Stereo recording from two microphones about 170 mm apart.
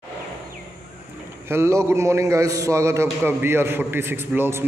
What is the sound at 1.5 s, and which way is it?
A man's voice, 15° right (ahead or behind).